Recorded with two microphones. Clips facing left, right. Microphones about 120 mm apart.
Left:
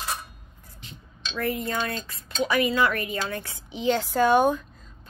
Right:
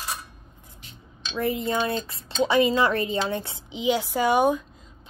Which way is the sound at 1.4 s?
25° right (ahead or behind).